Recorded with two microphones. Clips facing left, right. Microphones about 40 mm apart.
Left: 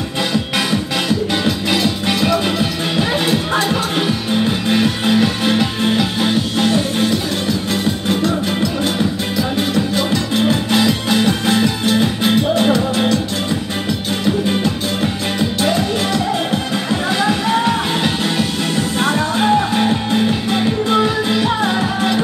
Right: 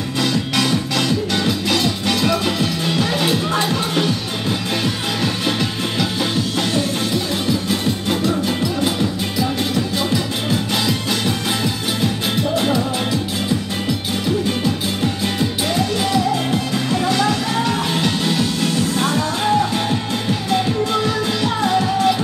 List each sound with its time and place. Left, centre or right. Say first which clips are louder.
0.2 s music: even; centre
8.1 s music: left 2 dB; centre
10.7 s music: left 5 dB; centre
15.7 s music: left 1 dB; centre
16.7 s music: right 1 dB; left